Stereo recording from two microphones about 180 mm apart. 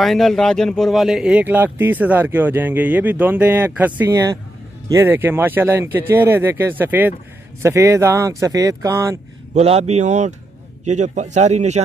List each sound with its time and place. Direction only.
0.0 s speech: centre (ahead or behind); by 9.2 s 15° right (ahead or behind)
9.5 s a man's voice: 35° right (ahead or behind)